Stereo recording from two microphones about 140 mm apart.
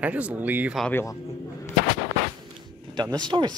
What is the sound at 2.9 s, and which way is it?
Speech, 30° right (ahead or behind).